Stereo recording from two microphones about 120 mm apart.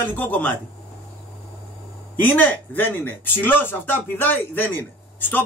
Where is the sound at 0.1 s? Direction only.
15° left (ahead or behind).